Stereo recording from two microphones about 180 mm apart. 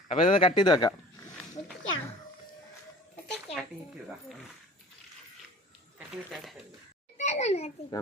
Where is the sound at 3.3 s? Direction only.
5° left (ahead or behind).